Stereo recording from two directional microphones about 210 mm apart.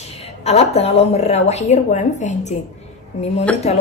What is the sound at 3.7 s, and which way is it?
Speech, 30° left (ahead or behind).